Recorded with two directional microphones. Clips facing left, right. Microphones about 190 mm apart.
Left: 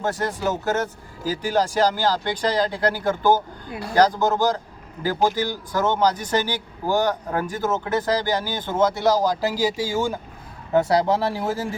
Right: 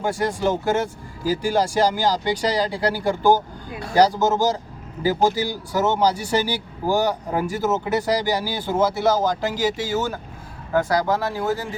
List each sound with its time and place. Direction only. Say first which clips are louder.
0.0 s speech: right 2 dB; 10° right (ahead or behind); by 10.2 s 10° left (ahead or behind)
10.7 s speech: left 2 dB; 25° left (ahead or behind)